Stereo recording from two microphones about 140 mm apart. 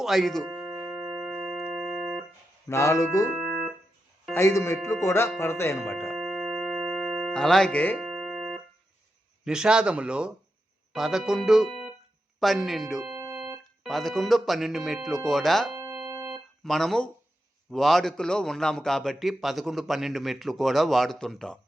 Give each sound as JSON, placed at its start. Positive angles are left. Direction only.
{"t": 0.0, "sound": "a man's voice", "side_deg": 0}
{"t": 0.4, "sound": "music", "side_deg": -10}
{"t": 1.4, "sound": "organ", "side_deg": -15}
{"t": 2.6, "sound": "speech", "side_deg": 20}
{"t": 3.3, "sound": "organ", "side_deg": 0}
{"t": 4.4, "sound": "speech", "side_deg": 20}
{"t": 6.1, "sound": "tuning fork", "side_deg": 0}
{"t": 7.9, "sound": "music", "side_deg": 0}
{"t": 9.4, "sound": "a man's voice", "side_deg": -5}
{"t": 13.1, "sound": "organ", "side_deg": -20}
{"t": 13.8, "sound": "a man's voice", "side_deg": 0}
{"t": 15.7, "sound": "music", "side_deg": -20}
{"t": 16.3, "sound": "a sound", "side_deg": 0}
{"t": 17.7, "sound": "a man's voice", "side_deg": 0}